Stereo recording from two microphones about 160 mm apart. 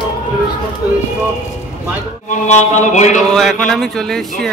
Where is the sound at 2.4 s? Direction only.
50° left (ahead or behind).